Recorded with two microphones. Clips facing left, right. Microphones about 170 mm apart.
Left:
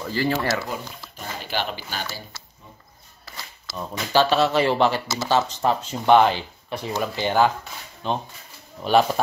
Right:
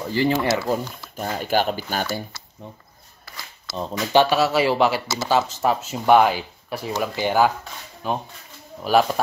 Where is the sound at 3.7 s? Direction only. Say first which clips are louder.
Right 3 dB; 25° right (ahead or behind); by 9.2 s centre (ahead or behind).